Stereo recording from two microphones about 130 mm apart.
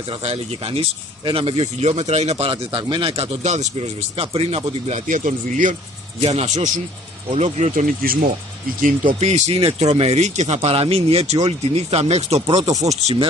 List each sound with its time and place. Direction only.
0.2 s speech: 50° right (ahead or behind)
5.0 s speech: 80° right
6.2 s speech: 60° right (ahead or behind); by 8.3 s 90° right
8.8 s speech: 75° right (ahead or behind); by 12.6 s 55° right (ahead or behind)